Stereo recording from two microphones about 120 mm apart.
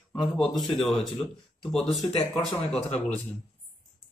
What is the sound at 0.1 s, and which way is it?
Speech, 5° left (ahead or behind).